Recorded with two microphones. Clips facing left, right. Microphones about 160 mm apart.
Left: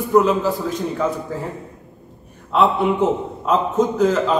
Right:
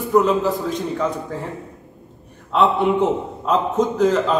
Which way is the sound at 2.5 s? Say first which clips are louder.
Even; centre (ahead or behind).